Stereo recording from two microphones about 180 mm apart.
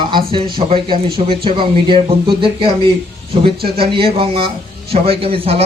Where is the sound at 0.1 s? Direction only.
30° right (ahead or behind).